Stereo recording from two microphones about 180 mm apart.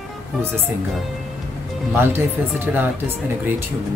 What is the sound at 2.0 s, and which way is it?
Speech, 10° right (ahead or behind).